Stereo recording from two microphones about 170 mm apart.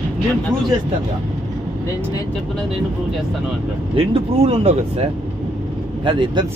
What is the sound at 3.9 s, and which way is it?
Speech, 35° right (ahead or behind).